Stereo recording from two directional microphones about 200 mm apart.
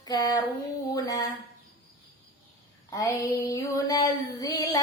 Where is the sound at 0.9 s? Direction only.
20° left (ahead or behind).